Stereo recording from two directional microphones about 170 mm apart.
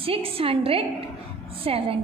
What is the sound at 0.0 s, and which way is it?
A woman's voice, 35° right (ahead or behind).